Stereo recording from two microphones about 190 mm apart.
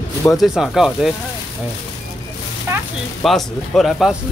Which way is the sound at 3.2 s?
Centre (ahead or behind).